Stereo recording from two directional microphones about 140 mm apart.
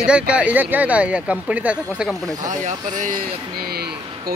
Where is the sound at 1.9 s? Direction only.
Centre (ahead or behind).